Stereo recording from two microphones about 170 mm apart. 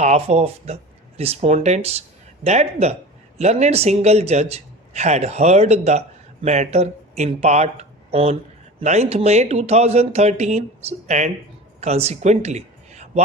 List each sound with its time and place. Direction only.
0.0 s a man's voice: 40° right (ahead or behind)